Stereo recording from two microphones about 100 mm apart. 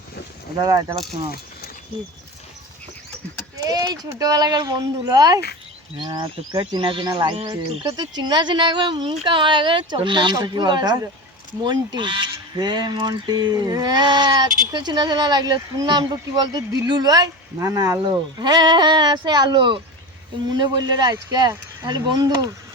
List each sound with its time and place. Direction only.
0.6 s speech: 40° right (ahead or behind)
3.6 s speech: 40° right (ahead or behind)
18.0 s speech: 45° right (ahead or behind)